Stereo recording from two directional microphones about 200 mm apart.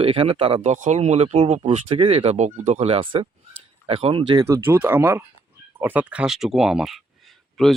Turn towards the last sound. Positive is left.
turn(degrees=0)  # may be behind; listen again after turning